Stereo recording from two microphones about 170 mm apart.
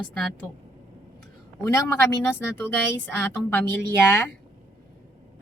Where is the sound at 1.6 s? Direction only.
15° left (ahead or behind).